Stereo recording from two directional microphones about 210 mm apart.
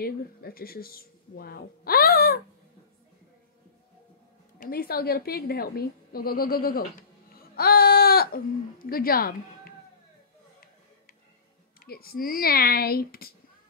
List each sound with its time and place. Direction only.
0.0 s speech: 45° left (ahead or behind)
4.6 s speech: 45° left (ahead or behind)
7.0 s baby cry: 45° left (ahead or behind)
11.8 s speech: 45° left (ahead or behind)